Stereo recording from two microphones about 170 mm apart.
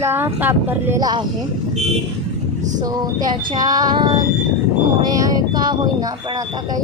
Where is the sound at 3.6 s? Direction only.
20° right (ahead or behind).